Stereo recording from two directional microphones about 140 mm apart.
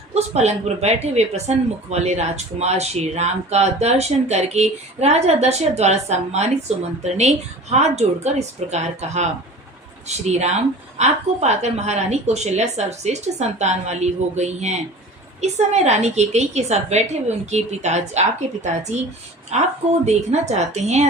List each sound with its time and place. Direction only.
0.1 s speech: 50° right (ahead or behind)